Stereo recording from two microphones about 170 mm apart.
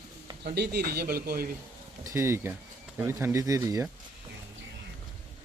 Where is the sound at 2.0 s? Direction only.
15° right (ahead or behind).